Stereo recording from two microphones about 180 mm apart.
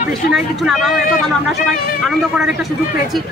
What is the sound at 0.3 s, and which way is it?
Speech, centre (ahead or behind).